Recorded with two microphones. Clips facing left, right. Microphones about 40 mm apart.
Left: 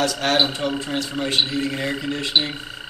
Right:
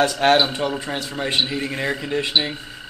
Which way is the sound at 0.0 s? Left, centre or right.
Right.